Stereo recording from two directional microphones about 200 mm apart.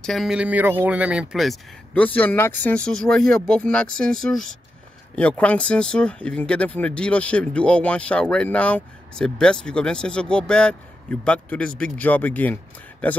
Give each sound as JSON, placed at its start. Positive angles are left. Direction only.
{"t": 0.0, "sound": "speech", "side_deg": 0}